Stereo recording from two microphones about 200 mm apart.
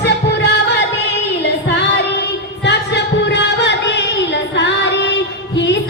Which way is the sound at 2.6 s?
60° left (ahead or behind).